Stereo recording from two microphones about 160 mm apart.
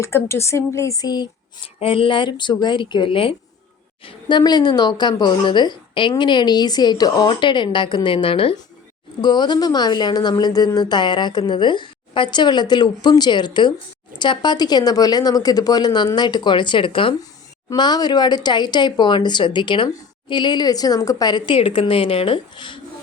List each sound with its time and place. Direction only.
0.0 s speech: 15° left (ahead or behind)